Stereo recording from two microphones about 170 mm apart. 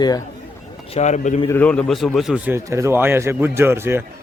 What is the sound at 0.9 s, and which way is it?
Speech, 40° left (ahead or behind).